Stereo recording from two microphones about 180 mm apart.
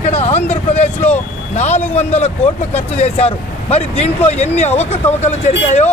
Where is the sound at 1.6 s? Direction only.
40° left (ahead or behind).